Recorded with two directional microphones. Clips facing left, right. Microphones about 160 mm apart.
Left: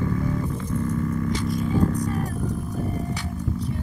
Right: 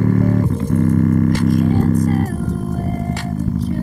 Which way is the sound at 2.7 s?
90° right.